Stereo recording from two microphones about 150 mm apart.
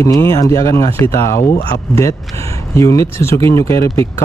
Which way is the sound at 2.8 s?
20° left (ahead or behind).